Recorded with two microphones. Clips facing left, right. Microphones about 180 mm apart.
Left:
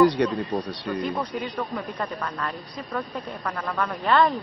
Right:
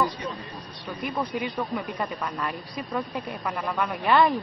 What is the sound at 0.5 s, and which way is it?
Speech, 90° left.